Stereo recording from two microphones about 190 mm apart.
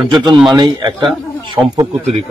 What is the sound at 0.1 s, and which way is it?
A man's voice, 25° right (ahead or behind).